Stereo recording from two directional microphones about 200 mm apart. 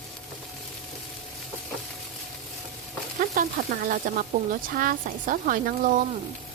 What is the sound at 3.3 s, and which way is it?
Speech, 45° right (ahead or behind).